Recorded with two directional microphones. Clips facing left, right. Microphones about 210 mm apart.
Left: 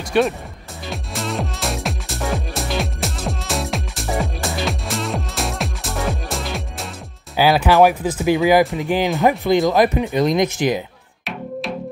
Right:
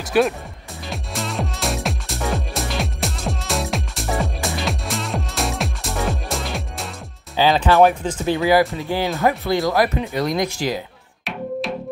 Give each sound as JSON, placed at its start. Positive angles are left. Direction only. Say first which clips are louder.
{"t": 0.1, "sound": "speech", "louder": "even", "side_deg": -5}
{"t": 0.8, "sound": "music", "louder": "left 2 dB", "side_deg": 0}
{"t": 7.3, "sound": "speech", "louder": "left 1 dB", "side_deg": 10}